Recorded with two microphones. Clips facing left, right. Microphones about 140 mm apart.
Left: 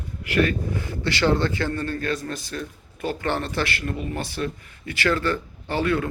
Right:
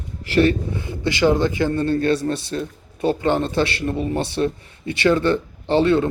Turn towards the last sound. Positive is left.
turn(degrees=-25)  # may be behind; listen again after turning